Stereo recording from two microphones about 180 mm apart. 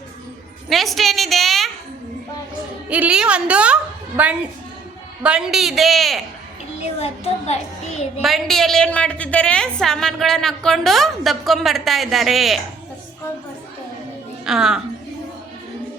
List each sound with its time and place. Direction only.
0.7 s a woman's voice: centre (ahead or behind)
2.9 s a woman's voice: 5° right (ahead or behind)
6.7 s a child's voice: 35° left (ahead or behind)
8.2 s a woman's voice: centre (ahead or behind)
14.4 s a woman's voice: 5° right (ahead or behind)